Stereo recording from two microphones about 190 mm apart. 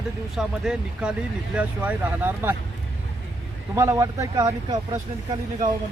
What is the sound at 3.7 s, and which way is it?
Speech, 15° right (ahead or behind).